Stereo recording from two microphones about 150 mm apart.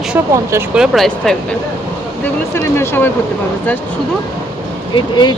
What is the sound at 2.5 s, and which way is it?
Speech, 15° left (ahead or behind).